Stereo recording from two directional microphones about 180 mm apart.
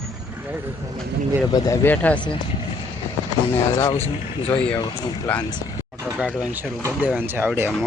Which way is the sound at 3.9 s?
35° left (ahead or behind).